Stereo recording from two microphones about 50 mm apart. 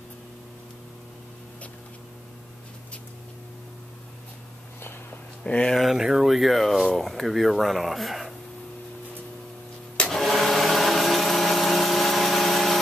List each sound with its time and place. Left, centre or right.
5.4 s speech: centre
5.8 s speech: centre
10.1 s a sound: centre